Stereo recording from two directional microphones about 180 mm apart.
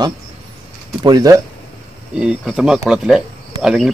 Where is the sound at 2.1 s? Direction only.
5° right (ahead or behind).